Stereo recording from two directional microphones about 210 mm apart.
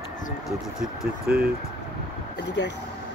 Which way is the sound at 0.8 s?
5° right (ahead or behind).